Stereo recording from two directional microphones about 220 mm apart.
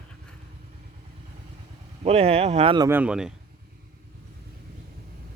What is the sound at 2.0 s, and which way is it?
Speech, 25° right (ahead or behind).